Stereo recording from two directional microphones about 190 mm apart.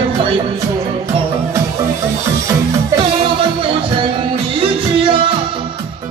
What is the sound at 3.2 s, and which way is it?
Music, 30° right (ahead or behind).